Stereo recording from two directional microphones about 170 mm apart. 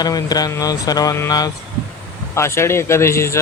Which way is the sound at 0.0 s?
20° left (ahead or behind).